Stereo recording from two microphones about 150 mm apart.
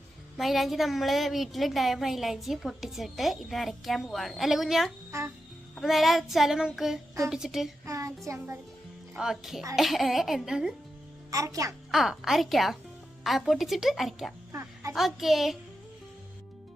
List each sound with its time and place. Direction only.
0.3 s a woman's voice: centre (ahead or behind)
7.9 s child singing: 20° right (ahead or behind)
9.1 s a woman's voice: 5° right (ahead or behind)
11.3 s a child's voice: 20° right (ahead or behind)
11.9 s a woman's voice: centre (ahead or behind)
14.5 s a sound: 20° right (ahead or behind)
14.9 s a woman's voice: centre (ahead or behind)